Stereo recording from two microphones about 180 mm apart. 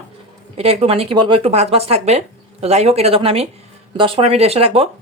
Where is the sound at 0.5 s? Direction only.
35° right (ahead or behind).